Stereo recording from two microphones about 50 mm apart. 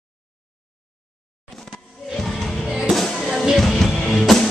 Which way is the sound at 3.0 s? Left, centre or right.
Centre.